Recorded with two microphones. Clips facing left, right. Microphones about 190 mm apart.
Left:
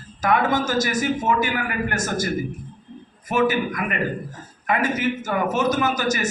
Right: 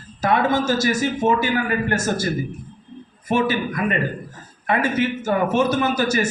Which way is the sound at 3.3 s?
30° right (ahead or behind).